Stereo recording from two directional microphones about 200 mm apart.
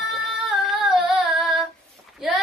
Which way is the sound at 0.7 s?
Centre (ahead or behind).